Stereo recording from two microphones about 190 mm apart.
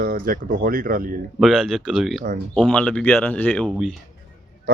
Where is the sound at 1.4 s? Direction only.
Centre (ahead or behind).